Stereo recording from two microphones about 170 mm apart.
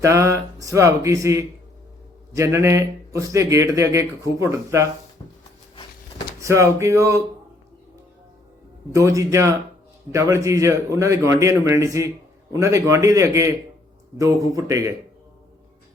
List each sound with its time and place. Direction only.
0.0 s a man's voice: 15° right (ahead or behind)
6.4 s a man's voice: 15° right (ahead or behind)
8.9 s a man's voice: 20° right (ahead or behind)